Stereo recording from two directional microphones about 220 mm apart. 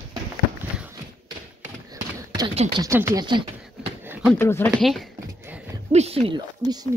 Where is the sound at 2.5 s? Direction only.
30° right (ahead or behind).